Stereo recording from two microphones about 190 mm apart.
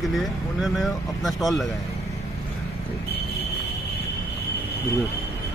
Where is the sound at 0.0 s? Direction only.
Centre (ahead or behind).